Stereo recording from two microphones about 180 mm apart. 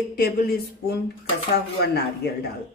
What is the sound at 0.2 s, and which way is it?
Speech, 60° left (ahead or behind).